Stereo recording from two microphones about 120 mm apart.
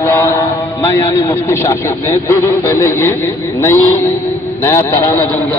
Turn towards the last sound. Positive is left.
turn(degrees=20)  # may be behind; listen again after turning